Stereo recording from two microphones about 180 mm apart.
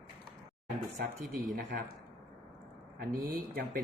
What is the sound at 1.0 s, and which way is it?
Speech, 55° right (ahead or behind).